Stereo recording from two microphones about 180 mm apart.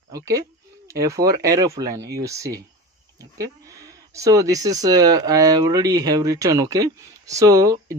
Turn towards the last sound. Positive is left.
turn(degrees=-20)  # may be behind; listen again after turning